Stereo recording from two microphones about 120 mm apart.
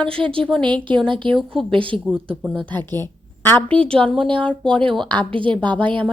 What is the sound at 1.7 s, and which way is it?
Speech, 45° right (ahead or behind).